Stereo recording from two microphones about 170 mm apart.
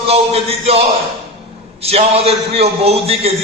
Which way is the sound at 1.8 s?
35° right (ahead or behind).